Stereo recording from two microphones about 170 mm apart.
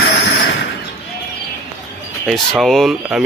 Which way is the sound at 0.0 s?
90° left.